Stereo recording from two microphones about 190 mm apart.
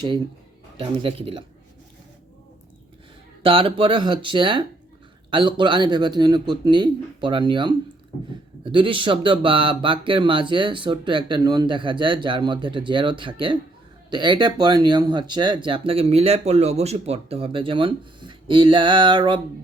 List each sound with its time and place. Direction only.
0.8 s speech: 30° right (ahead or behind)
3.4 s speech: 30° right (ahead or behind)